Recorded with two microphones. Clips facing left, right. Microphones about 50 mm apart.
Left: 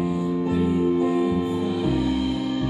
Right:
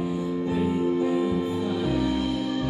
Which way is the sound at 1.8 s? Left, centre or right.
Centre.